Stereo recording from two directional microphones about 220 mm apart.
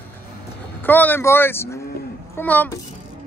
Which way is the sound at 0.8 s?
10° left (ahead or behind).